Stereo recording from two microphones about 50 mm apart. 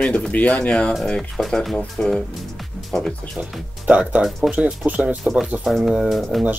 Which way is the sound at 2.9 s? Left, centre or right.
Centre.